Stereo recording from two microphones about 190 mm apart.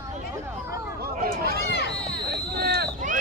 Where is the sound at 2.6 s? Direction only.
55° right (ahead or behind).